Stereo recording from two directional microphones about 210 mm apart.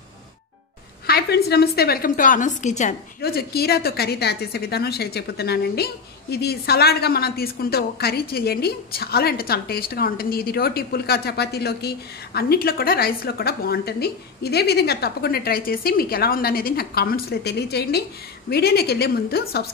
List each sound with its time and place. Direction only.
1.0 s a woman's voice: 50° left (ahead or behind)
3.2 s a woman's voice: 50° left (ahead or behind)